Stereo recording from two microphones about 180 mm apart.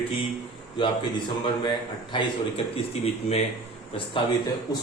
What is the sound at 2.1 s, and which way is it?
Speech, 30° left (ahead or behind).